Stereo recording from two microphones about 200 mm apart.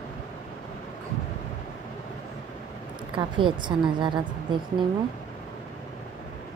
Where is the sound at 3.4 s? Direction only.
25° right (ahead or behind).